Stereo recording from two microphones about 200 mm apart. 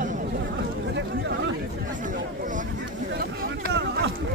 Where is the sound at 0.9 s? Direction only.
55° right (ahead or behind).